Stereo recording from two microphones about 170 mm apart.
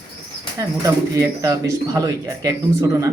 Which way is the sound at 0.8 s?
20° right (ahead or behind).